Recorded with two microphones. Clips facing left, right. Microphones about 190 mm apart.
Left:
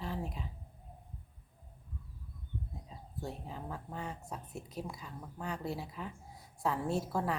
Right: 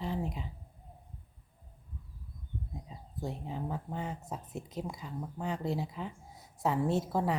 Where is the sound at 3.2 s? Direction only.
20° right (ahead or behind).